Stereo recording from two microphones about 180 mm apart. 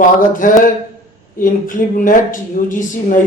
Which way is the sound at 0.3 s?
50° left (ahead or behind).